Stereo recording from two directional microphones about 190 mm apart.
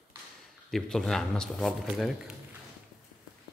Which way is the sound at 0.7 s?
Centre (ahead or behind).